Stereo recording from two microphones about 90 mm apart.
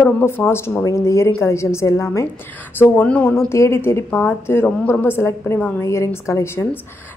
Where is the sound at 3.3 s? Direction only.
30° left (ahead or behind).